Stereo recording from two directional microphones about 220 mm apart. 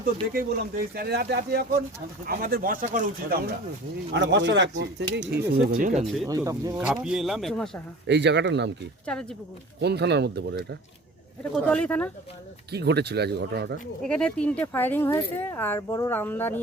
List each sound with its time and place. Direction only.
0.0 s speech: 40° right (ahead or behind)
4.1 s speech: 55° right (ahead or behind)
5.8 s speech: 30° right (ahead or behind)
6.2 s speech: 15° right (ahead or behind)
6.8 s speech: 5° right (ahead or behind)
8.0 s speech: 50° right (ahead or behind)
9.8 s speech: 50° right (ahead or behind)
11.6 s speech: 5° left (ahead or behind)
12.7 s speech: 50° right (ahead or behind)
14.0 s speech: 5° left (ahead or behind)